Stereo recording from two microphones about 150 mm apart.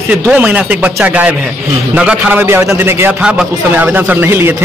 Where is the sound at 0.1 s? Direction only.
10° right (ahead or behind).